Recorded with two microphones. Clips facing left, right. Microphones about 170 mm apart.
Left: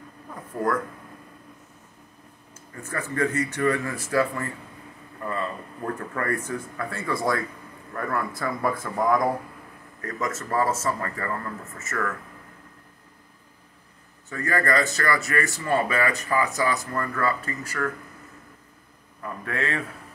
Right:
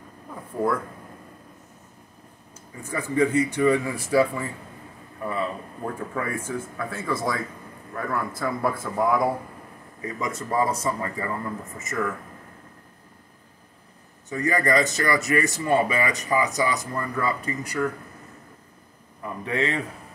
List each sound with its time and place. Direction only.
0.5 s speech: 5° right (ahead or behind)
2.7 s speech: 10° right (ahead or behind)
5.2 s a sound: 10° right (ahead or behind)
5.9 s speech: 10° right (ahead or behind)
14.3 s speech: 20° right (ahead or behind)
19.2 s speech: 20° right (ahead or behind)